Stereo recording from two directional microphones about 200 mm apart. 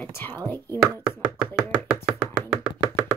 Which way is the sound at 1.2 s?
5° right (ahead or behind).